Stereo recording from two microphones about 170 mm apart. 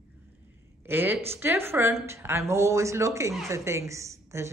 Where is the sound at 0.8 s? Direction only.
10° right (ahead or behind).